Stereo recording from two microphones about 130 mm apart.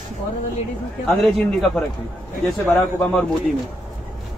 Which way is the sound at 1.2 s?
Centre (ahead or behind).